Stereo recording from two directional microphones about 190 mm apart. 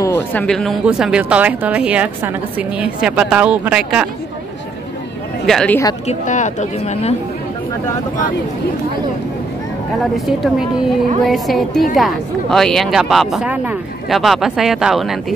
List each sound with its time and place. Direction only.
0.0 s speech: 10° left (ahead or behind)
5.5 s speech: 5° left (ahead or behind)
6.0 s speech: 40° left (ahead or behind)
10.1 s speech: centre (ahead or behind)